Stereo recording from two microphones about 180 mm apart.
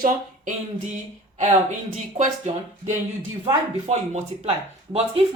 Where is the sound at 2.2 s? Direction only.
45° right (ahead or behind).